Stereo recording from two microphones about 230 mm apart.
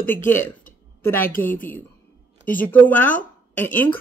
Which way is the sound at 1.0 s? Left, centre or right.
Centre.